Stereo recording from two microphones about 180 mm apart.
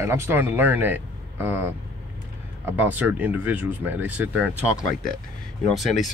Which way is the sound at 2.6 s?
10° right (ahead or behind).